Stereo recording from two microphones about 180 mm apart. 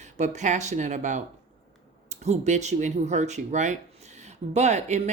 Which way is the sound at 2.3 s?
40° right (ahead or behind).